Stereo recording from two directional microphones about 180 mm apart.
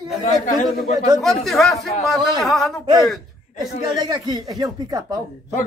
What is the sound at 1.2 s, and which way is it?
A man's voice, centre (ahead or behind).